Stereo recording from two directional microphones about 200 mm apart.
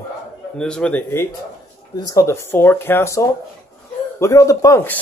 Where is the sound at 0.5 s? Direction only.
5° left (ahead or behind).